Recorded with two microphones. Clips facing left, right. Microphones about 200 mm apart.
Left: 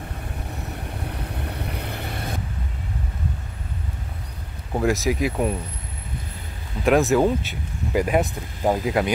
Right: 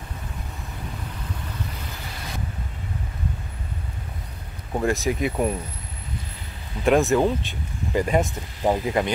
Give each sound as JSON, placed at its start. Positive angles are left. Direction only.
{"t": 1.0, "sound": "vehicle", "side_deg": 65}
{"t": 4.7, "sound": "speech", "side_deg": 0}
{"t": 6.8, "sound": "speech", "side_deg": 0}